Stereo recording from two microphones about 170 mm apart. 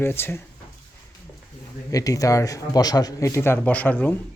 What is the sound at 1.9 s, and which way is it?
Speech, 20° left (ahead or behind).